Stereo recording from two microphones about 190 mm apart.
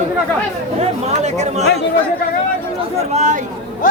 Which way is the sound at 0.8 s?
35° right (ahead or behind).